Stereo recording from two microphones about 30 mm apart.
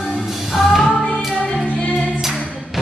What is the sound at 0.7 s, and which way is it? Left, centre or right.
Music, centre.